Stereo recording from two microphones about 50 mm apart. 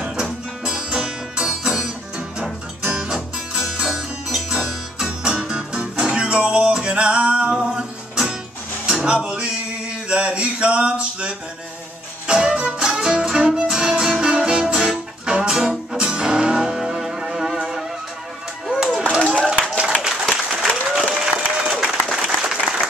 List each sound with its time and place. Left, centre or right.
0.0 s music: centre
3.9 s music: centre
10.0 s a sound: right
12.3 s music: centre
18.8 s a sound: centre
19.9 s applause: centre